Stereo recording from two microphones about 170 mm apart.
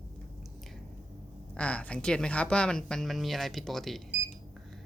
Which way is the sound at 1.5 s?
5° left (ahead or behind).